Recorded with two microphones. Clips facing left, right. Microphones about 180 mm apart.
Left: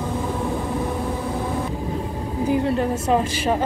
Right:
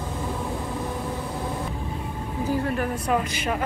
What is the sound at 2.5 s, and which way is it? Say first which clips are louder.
Speech: left 5 dB; 25° left (ahead or behind).